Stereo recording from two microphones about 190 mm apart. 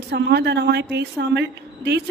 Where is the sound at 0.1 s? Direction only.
60° right (ahead or behind).